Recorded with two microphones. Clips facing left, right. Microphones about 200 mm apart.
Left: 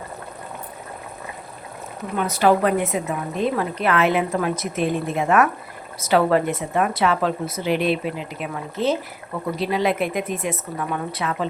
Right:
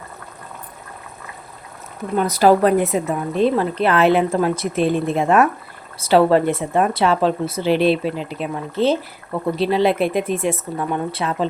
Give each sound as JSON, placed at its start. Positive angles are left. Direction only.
{"t": 2.1, "sound": "speech", "side_deg": -35}